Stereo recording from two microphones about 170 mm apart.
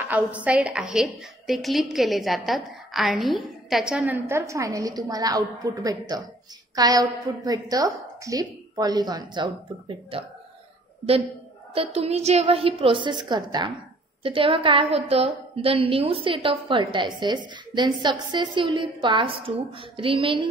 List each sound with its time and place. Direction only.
0.1 s a woman's voice: 10° right (ahead or behind); by 10.2 s 30° right (ahead or behind)
11.7 s a woman's voice: 35° right (ahead or behind)